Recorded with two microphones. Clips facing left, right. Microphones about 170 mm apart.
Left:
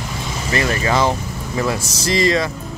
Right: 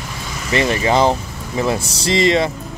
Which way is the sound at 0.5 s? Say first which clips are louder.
Right 3 dB; 25° right (ahead or behind).